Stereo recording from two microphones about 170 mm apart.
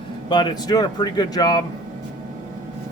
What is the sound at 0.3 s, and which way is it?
Speech, 25° left (ahead or behind).